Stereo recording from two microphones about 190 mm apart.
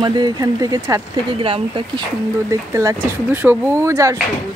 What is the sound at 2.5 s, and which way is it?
Speech, 15° right (ahead or behind).